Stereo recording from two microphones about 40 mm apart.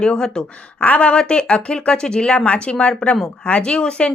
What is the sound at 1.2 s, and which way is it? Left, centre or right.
Speech, left.